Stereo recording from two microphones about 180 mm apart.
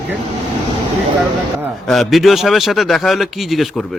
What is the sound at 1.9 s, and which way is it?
A man's voice, centre (ahead or behind).